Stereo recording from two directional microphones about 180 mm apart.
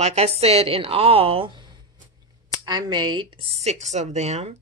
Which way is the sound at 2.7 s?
25° right (ahead or behind).